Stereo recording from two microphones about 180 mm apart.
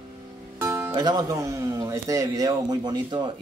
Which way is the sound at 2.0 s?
20° right (ahead or behind).